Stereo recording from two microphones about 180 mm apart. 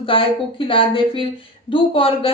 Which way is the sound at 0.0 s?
30° left (ahead or behind).